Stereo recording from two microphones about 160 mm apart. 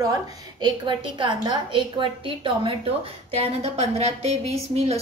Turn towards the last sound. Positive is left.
turn(degrees=-40)  # may be behind; listen again after turning